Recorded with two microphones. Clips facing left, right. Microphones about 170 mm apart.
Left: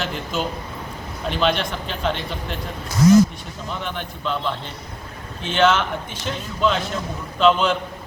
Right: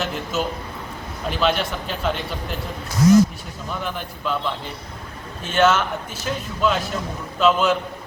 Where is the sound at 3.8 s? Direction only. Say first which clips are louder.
Right 1 dB; 5° right (ahead or behind).